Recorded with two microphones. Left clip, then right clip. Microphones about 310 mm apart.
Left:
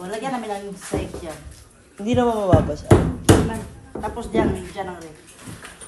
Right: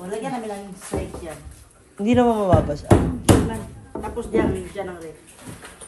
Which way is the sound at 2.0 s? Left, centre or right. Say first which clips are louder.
Right 1 dB; right.